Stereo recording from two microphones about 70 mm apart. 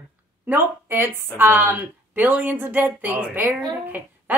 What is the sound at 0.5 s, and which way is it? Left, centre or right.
Speech, right.